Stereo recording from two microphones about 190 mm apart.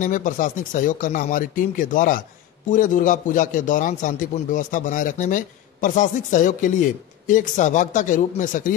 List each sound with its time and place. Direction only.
0.0 s a man's voice: 45° left (ahead or behind)